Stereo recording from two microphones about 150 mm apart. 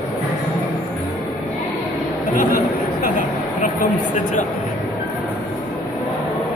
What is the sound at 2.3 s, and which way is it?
Speech, 60° left (ahead or behind).